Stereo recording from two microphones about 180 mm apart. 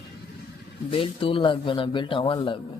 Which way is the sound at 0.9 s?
30° left (ahead or behind).